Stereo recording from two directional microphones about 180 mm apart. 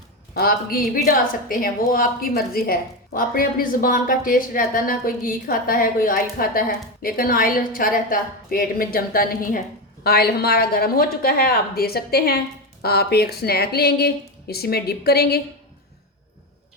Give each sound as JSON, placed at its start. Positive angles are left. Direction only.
{"t": 0.3, "sound": "a woman's voice", "side_deg": 55}